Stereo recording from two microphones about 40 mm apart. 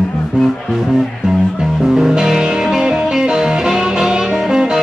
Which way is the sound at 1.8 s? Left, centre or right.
Centre.